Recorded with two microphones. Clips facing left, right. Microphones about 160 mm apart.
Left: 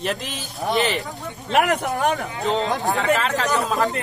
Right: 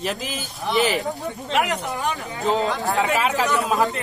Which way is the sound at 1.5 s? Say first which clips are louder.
Left 4 dB; 50° left (ahead or behind).